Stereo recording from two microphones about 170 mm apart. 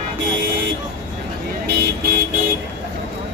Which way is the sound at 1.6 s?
70° right (ahead or behind).